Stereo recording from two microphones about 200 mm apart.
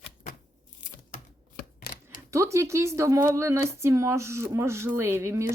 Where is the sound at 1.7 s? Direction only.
45° left (ahead or behind).